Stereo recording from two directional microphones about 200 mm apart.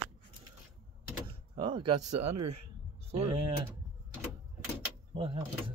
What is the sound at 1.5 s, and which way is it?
Speech, 25° right (ahead or behind).